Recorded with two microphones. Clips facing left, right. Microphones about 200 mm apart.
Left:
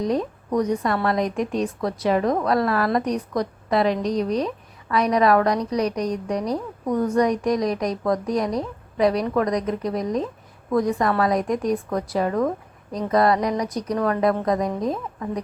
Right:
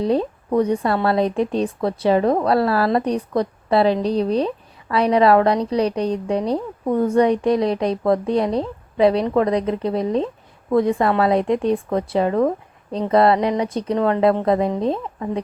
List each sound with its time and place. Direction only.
0.0 s speech: 30° right (ahead or behind)